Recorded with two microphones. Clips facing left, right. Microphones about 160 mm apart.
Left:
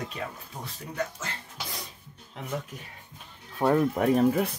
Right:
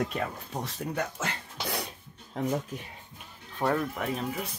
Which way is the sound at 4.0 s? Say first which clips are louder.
Left 10 dB; 50° left (ahead or behind).